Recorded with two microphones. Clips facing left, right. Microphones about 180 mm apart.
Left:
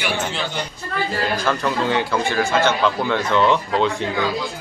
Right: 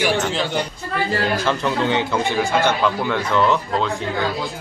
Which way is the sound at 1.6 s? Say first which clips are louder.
Right 1 dB; 20° right (ahead or behind).